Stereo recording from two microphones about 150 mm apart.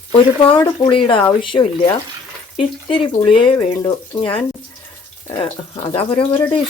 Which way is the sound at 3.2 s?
35° left (ahead or behind).